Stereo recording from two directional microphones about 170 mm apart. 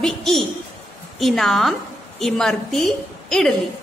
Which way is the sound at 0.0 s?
Centre (ahead or behind).